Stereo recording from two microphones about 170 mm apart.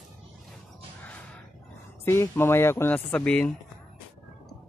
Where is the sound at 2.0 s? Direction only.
15° left (ahead or behind).